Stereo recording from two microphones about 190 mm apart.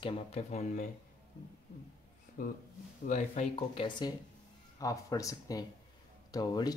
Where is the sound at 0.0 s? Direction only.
35° left (ahead or behind).